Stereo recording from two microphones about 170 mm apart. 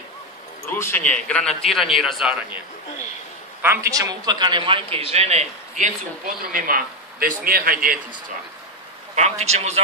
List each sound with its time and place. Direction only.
0.7 s a man's voice: 15° left (ahead or behind); by 2.6 s 5° right (ahead or behind)
3.6 s a man's voice: 15° right (ahead or behind); by 8.0 s 55° right (ahead or behind)
9.1 s a man's voice: 40° right (ahead or behind)